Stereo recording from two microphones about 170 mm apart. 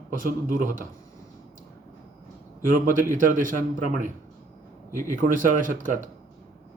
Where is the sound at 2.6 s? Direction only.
55° right (ahead or behind).